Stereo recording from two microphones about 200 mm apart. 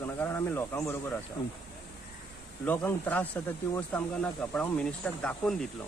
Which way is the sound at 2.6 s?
10° left (ahead or behind).